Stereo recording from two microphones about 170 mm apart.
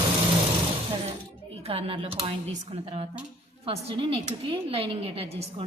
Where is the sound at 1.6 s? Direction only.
35° right (ahead or behind).